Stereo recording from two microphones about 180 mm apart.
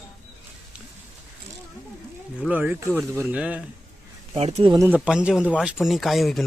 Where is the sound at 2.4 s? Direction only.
5° right (ahead or behind).